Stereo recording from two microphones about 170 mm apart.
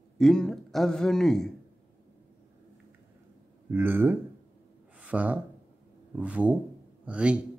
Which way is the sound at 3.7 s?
10° right (ahead or behind).